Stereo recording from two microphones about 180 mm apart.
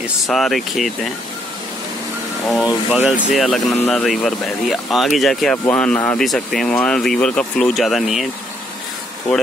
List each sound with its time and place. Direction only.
0.0 s speech: centre (ahead or behind)
2.4 s speech: centre (ahead or behind)